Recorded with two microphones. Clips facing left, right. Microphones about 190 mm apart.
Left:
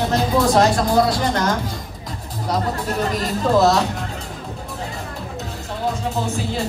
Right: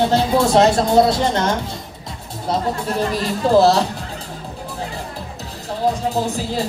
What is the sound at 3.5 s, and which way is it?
Speech, 30° right (ahead or behind).